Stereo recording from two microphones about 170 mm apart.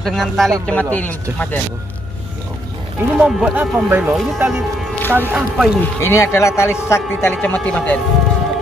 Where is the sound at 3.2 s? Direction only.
10° right (ahead or behind).